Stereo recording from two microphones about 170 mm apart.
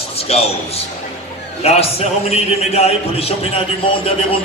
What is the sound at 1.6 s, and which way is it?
A man's voice, 35° left (ahead or behind).